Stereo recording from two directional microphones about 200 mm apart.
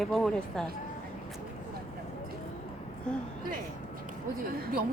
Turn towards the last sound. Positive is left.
turn(degrees=-50)  # may be behind; listen again after turning